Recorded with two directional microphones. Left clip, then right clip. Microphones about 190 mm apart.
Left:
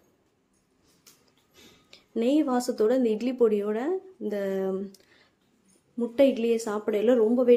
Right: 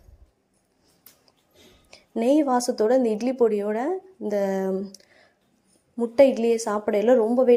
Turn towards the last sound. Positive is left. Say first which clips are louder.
# right 3 dB
turn(degrees=-10)  # may be behind; listen again after turning